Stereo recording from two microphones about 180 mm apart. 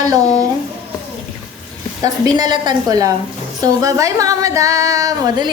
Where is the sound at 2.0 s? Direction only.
20° right (ahead or behind).